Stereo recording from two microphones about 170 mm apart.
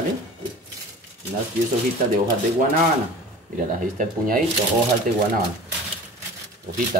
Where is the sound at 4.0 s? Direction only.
55° right (ahead or behind).